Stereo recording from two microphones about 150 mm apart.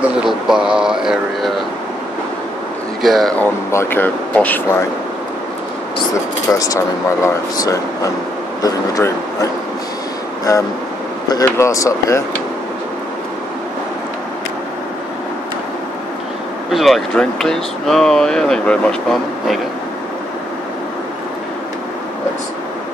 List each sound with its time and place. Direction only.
0.2 s speech: 5° right (ahead or behind)
3.0 s speech: centre (ahead or behind)
3.7 s speech: 15° left (ahead or behind)
6.5 s speech: 25° left (ahead or behind)
11.2 s speech: 20° left (ahead or behind)
16.7 s speech: centre (ahead or behind)